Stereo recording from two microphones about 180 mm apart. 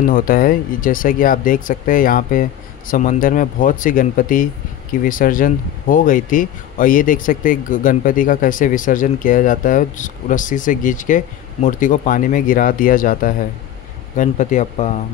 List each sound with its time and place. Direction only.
0.0 s speech: 50° left (ahead or behind)